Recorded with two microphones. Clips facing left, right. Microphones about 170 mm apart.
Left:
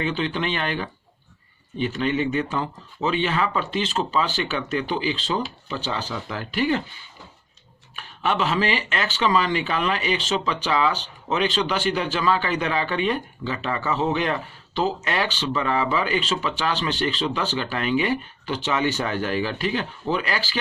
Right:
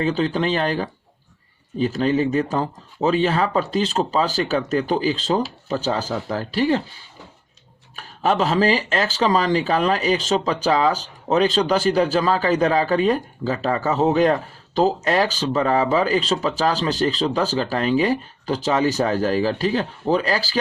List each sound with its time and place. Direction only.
0.0 s speech: 35° right (ahead or behind)
7.9 s speech: 40° right (ahead or behind)